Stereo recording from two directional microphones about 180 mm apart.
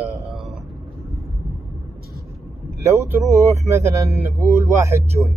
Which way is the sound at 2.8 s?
15° right (ahead or behind).